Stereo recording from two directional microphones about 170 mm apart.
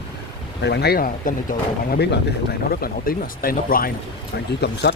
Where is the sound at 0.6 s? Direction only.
80° left; by 3.9 s 55° left (ahead or behind).